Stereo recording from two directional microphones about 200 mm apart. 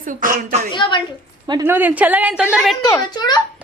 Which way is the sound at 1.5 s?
15° right (ahead or behind).